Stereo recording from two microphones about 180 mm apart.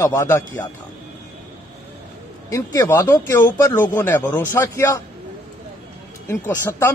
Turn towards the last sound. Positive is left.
turn(degrees=15)  # may be behind; listen again after turning